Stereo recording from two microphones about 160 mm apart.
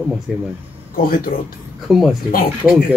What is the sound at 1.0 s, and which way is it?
Speech, 65° left (ahead or behind).